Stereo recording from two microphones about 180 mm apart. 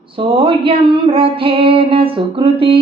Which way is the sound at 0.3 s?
30° right (ahead or behind).